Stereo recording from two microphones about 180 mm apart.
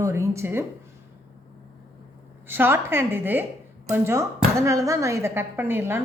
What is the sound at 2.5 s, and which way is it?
A woman's voice, 10° right (ahead or behind).